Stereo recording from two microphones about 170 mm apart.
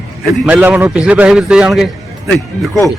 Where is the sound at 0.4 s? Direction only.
10° right (ahead or behind).